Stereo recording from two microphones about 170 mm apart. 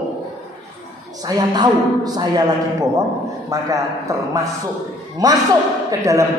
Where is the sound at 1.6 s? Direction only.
25° right (ahead or behind).